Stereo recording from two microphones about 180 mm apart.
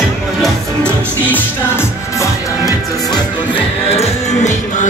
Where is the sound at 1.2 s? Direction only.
10° left (ahead or behind).